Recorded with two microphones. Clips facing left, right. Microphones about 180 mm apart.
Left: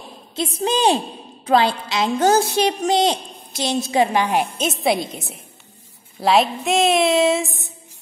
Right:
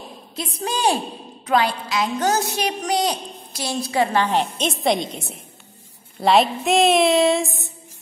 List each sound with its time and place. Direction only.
0.4 s a woman's voice: 25° left (ahead or behind); by 7.7 s centre (ahead or behind)